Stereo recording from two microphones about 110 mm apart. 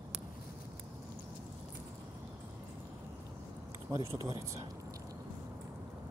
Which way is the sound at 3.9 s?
30° right (ahead or behind).